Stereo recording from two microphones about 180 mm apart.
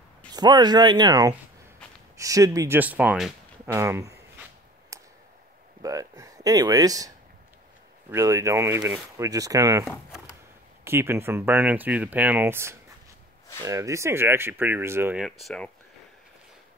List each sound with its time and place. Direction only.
0.3 s speech: 25° right (ahead or behind)
4.9 s a sound: 20° right (ahead or behind)
5.8 s speech: 20° right (ahead or behind)
15.4 s speech: 5° left (ahead or behind)